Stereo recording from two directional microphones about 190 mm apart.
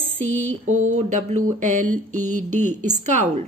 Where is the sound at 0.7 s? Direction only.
90° right.